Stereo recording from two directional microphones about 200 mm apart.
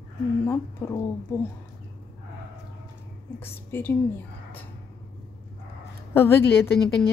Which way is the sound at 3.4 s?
10° left (ahead or behind).